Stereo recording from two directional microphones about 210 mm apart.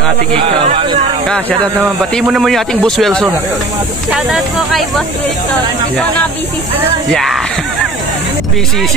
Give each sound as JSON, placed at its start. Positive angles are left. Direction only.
{"t": 0.7, "sound": "speech", "side_deg": -25}
{"t": 2.2, "sound": "speech", "side_deg": 0}
{"t": 7.1, "sound": "speech", "side_deg": 0}